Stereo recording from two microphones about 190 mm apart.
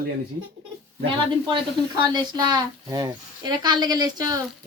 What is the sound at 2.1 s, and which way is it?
A woman's voice, 20° right (ahead or behind).